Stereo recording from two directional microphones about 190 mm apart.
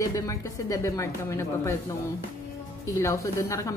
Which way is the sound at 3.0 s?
15° left (ahead or behind).